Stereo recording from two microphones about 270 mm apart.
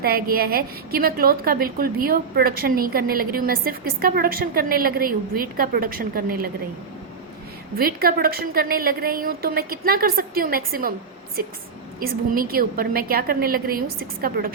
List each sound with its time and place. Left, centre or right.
0.0 s a woman's voice: right
7.8 s a woman's voice: right
11.9 s a woman's voice: right